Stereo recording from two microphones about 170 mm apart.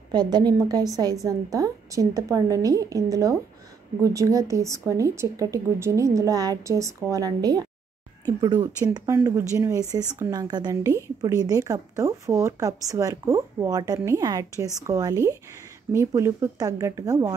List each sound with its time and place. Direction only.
0.1 s a woman's voice: 25° right (ahead or behind)